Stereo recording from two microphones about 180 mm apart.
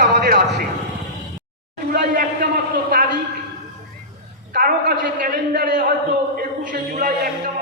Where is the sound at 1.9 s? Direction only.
50° right (ahead or behind).